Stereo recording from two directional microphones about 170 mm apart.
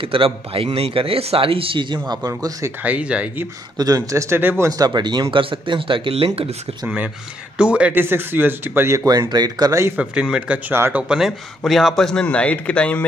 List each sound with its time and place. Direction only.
0.0 s a man's voice: 30° right (ahead or behind)
2.8 s speech: 5° right (ahead or behind)
3.7 s speech: 20° right (ahead or behind)
7.5 s speech: 5° right (ahead or behind)